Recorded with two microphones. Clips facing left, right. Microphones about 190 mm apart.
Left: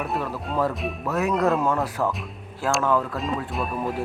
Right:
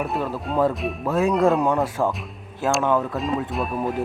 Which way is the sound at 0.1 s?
Centre (ahead or behind).